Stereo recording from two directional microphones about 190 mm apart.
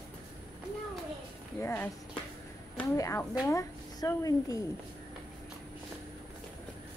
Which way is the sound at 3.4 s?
15° left (ahead or behind).